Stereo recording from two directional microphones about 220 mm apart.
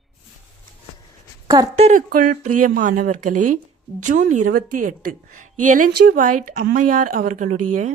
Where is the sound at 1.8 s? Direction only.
35° right (ahead or behind).